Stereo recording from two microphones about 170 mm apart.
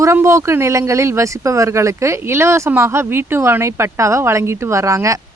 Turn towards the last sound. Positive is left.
turn(degrees=-20)  # may be behind; listen again after turning